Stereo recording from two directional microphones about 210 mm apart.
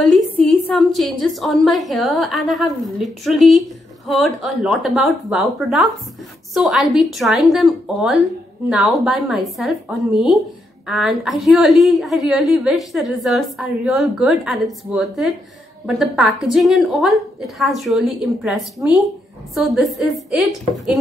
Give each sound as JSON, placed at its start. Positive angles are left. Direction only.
{"t": 0.0, "sound": "a woman's voice", "side_deg": 0}